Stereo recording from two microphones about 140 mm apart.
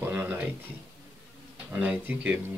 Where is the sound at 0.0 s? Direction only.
10° right (ahead or behind).